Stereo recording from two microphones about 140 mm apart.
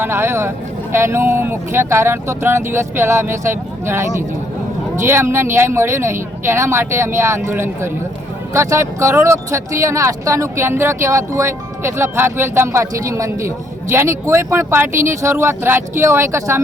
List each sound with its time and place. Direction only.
0.0 s speech: 20° right (ahead or behind)
5.0 s speech: 20° right (ahead or behind)